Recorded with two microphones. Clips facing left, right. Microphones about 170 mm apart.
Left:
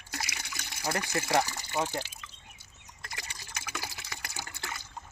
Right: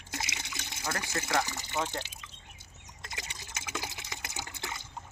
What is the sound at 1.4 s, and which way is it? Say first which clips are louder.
Speech: even; 20° right (ahead or behind).